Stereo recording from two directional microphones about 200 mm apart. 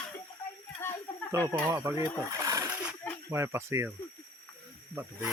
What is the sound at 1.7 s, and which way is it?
Speech, 10° right (ahead or behind).